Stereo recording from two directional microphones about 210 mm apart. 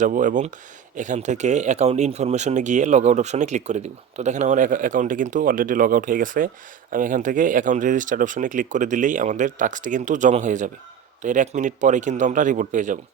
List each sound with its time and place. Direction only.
0.0 s speech: 35° right (ahead or behind)